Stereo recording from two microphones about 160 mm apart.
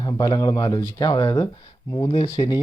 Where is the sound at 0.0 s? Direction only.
25° left (ahead or behind).